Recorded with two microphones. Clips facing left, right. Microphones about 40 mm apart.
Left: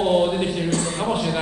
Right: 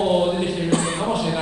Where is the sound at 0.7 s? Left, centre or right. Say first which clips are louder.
Right 2 dB; right.